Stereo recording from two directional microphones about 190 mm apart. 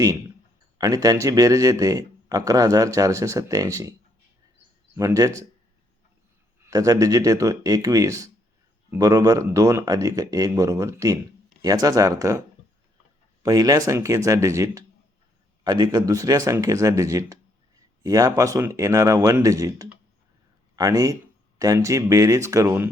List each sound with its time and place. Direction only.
0.8 s speech: 20° right (ahead or behind)
4.9 s speech: 15° right (ahead or behind)
6.7 s speech: 20° right (ahead or behind)
13.4 s speech: 20° right (ahead or behind)